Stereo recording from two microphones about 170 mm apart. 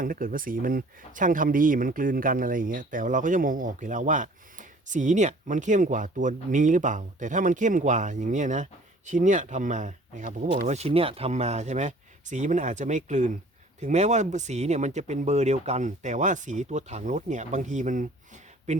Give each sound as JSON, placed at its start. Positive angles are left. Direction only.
{"t": 0.0, "sound": "speech", "side_deg": -55}